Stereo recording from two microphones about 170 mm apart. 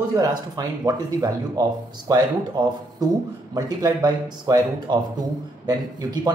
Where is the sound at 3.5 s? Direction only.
20° right (ahead or behind).